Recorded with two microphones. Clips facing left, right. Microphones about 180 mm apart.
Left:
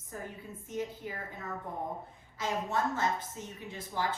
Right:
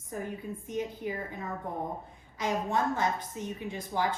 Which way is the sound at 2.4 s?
15° right (ahead or behind).